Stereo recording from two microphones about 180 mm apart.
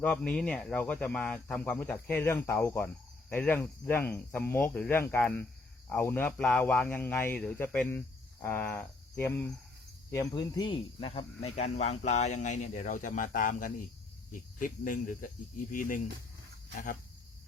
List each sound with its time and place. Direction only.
0.0 s speech: 5° left (ahead or behind); by 13.7 s 50° left (ahead or behind)
14.3 s cricket: 50° left (ahead or behind)